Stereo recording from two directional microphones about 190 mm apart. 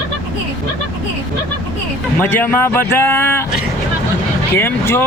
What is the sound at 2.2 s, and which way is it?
Speech, 10° left (ahead or behind).